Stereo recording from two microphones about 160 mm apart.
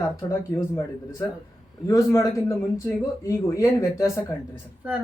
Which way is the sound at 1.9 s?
20° left (ahead or behind).